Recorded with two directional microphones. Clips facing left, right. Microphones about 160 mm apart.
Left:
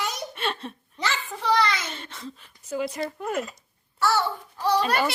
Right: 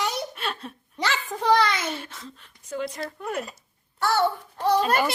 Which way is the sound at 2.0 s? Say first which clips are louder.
Left 1 dB; centre (ahead or behind).